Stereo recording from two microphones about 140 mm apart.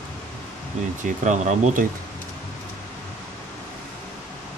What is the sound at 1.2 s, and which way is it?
Speech, 60° right (ahead or behind).